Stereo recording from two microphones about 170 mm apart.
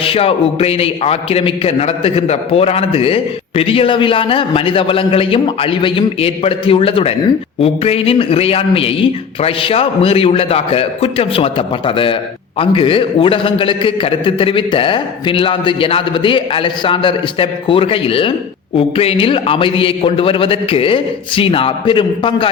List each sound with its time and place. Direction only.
0.0 s a man's voice: 35° left (ahead or behind)